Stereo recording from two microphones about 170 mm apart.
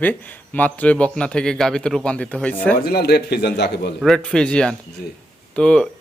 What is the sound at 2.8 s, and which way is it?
Speech, 70° left (ahead or behind).